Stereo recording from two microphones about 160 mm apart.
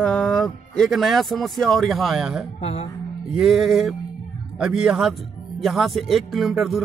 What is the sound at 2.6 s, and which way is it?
Speech, 40° left (ahead or behind).